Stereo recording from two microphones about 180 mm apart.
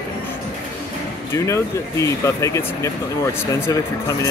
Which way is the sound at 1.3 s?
15° left (ahead or behind).